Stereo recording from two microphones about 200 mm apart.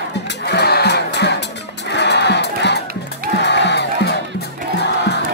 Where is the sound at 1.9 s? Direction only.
60° left (ahead or behind).